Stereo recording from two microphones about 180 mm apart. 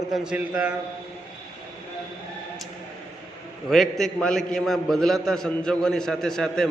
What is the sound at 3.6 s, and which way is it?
A man's voice, centre (ahead or behind).